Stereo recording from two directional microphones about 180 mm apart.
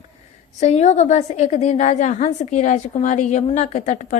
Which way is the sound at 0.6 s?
40° left (ahead or behind).